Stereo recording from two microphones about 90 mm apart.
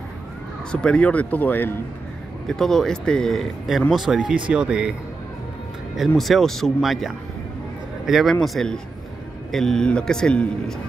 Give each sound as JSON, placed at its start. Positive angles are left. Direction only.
{"t": 0.7, "sound": "speech", "side_deg": 10}
{"t": 2.4, "sound": "speech", "side_deg": 5}
{"t": 5.9, "sound": "speech", "side_deg": 0}